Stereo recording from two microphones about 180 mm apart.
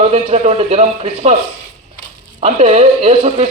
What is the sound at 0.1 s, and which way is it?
Speech, 35° right (ahead or behind).